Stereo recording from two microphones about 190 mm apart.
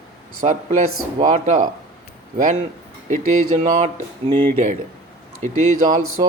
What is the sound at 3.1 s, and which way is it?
Speech, 40° right (ahead or behind).